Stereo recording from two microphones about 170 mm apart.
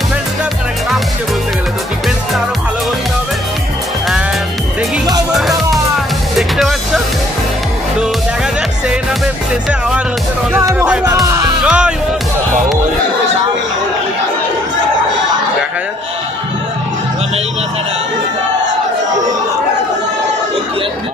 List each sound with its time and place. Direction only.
5.0 s music: 20° right (ahead or behind)
6.3 s music: centre (ahead or behind)
9.7 s music: 5° right (ahead or behind)